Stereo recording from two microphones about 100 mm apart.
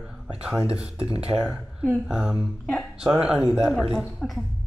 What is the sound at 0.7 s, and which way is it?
Speech, 85° right.